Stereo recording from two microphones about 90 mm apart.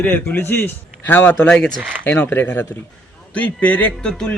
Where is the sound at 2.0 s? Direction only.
25° left (ahead or behind).